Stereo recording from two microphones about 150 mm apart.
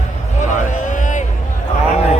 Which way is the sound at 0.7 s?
55° left (ahead or behind).